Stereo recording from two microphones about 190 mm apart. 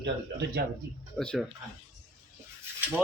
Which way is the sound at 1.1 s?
Centre (ahead or behind).